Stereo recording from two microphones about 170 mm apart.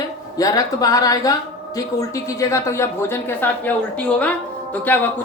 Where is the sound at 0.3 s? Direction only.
20° left (ahead or behind).